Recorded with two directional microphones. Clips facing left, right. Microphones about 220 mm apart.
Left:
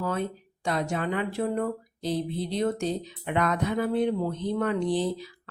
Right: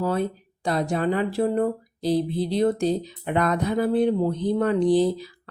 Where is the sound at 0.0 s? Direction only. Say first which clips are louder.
Right 5 dB; 35° right (ahead or behind).